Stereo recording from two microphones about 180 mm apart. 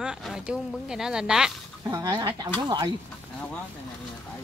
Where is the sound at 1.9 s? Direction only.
20° right (ahead or behind).